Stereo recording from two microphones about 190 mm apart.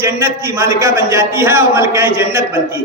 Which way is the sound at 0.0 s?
15° right (ahead or behind).